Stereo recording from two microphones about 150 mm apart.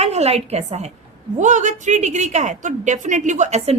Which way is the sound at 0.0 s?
45° right (ahead or behind).